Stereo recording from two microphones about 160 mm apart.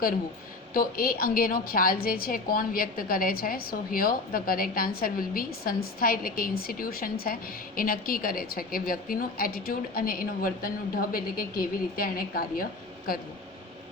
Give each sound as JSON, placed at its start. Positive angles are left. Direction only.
{"t": 0.7, "sound": "a woman's voice", "side_deg": 65}